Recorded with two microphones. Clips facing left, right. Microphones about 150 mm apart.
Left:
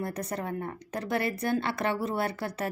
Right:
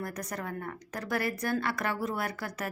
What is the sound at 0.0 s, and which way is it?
Speech, 25° left (ahead or behind).